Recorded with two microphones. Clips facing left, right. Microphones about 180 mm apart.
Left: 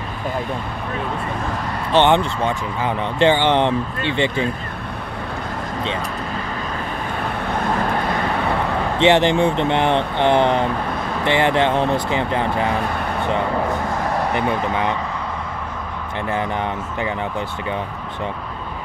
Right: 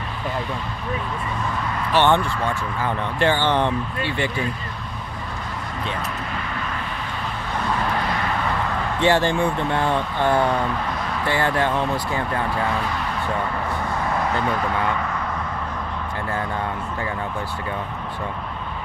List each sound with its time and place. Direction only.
1.9 s speech: 20° left (ahead or behind)
9.0 s speech: 20° left (ahead or behind)
14.3 s speech: 20° left (ahead or behind)